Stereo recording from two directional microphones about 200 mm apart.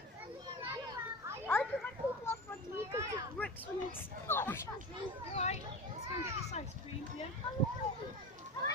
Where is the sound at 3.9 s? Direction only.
10° left (ahead or behind).